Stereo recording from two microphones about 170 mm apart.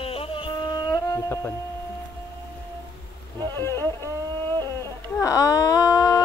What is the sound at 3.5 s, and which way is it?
Speech, 15° left (ahead or behind).